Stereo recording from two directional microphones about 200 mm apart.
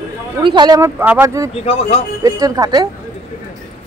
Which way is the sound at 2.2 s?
15° right (ahead or behind).